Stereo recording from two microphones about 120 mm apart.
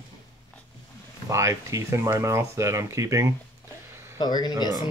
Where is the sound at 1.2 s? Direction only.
25° right (ahead or behind).